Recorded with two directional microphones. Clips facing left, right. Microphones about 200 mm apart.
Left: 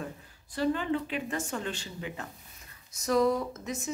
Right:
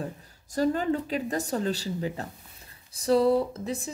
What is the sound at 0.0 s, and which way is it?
A woman's voice, 40° right (ahead or behind).